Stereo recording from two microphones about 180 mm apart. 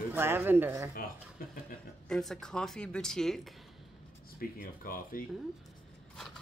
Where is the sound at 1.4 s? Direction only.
55° left (ahead or behind).